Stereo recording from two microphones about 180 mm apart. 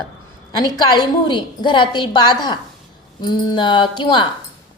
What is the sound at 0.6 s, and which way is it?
A woman's voice, 20° left (ahead or behind).